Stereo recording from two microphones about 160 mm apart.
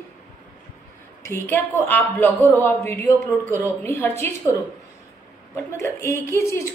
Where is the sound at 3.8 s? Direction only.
15° left (ahead or behind).